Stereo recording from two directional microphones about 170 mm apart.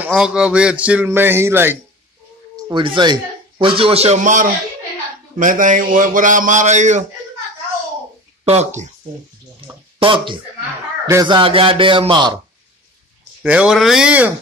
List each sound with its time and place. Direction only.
0.0 s speech: 5° right (ahead or behind)
2.7 s a man's voice: 30° right (ahead or behind); by 7.1 s 45° right (ahead or behind)
8.5 s a man's voice: 40° right (ahead or behind)
9.6 s a sound: 30° right (ahead or behind)
9.9 s a man's voice: 30° right (ahead or behind)
13.4 s speech: 5° right (ahead or behind)